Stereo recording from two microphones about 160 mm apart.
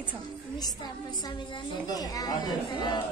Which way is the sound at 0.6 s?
25° left (ahead or behind).